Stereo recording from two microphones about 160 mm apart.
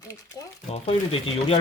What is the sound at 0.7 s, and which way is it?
Speech, 35° left (ahead or behind).